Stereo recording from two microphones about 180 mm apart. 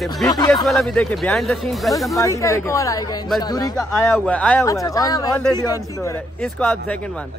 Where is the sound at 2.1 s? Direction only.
15° left (ahead or behind).